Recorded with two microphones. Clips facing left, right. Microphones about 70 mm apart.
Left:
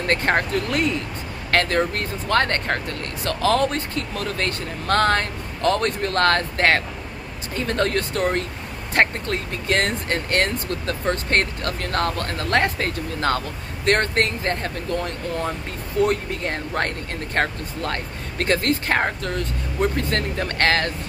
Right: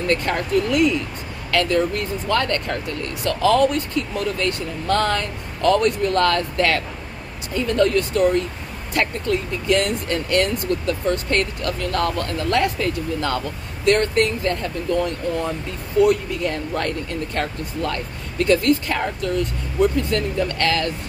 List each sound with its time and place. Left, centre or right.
0.0 s speech: left